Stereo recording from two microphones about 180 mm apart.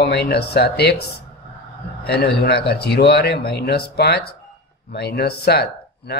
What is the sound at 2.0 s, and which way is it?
Speech, 65° left (ahead or behind).